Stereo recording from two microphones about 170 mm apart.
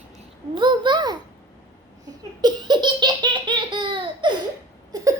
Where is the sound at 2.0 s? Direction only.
25° right (ahead or behind).